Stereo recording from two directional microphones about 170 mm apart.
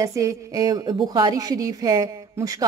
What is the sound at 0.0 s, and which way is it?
A woman's voice, 20° right (ahead or behind).